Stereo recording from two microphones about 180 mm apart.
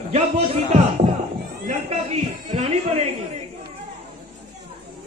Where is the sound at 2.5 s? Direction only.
30° right (ahead or behind).